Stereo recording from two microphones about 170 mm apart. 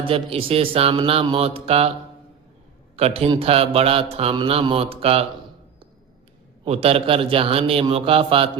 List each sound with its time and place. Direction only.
0.0 s mantra: 35° right (ahead or behind)
2.9 s mantra: 35° right (ahead or behind)
6.7 s mantra: 35° right (ahead or behind)